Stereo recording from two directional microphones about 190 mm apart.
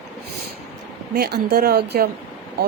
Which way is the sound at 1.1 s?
55° right (ahead or behind).